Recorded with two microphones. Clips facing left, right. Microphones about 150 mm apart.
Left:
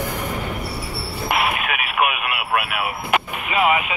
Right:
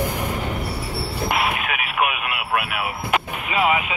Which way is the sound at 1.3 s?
65° left (ahead or behind).